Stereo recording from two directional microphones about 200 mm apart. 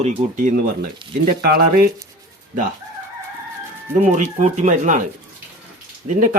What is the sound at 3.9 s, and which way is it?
Speech, 40° right (ahead or behind).